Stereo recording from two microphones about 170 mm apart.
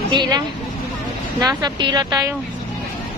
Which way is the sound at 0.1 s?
25° right (ahead or behind).